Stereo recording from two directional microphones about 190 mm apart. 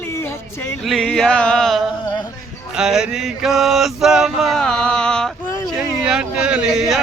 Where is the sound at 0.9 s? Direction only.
Centre (ahead or behind).